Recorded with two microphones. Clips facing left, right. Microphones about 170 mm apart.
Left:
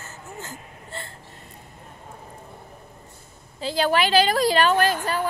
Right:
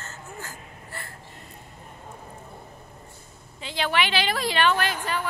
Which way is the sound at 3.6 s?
40° left (ahead or behind).